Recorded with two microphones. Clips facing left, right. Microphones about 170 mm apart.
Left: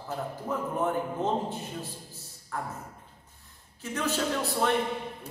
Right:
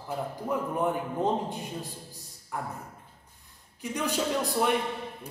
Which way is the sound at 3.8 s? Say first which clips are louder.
Even; 15° right (ahead or behind).